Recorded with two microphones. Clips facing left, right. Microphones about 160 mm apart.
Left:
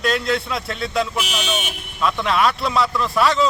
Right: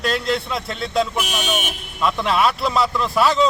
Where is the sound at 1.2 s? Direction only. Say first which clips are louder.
Right 1 dB; 50° right (ahead or behind).